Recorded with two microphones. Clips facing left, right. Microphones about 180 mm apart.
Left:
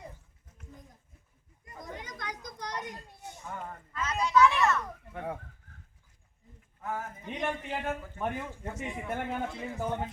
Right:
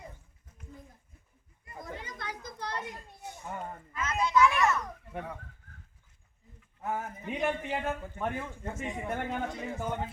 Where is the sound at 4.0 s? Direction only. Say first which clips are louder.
Right 1 dB; 35° left (ahead or behind).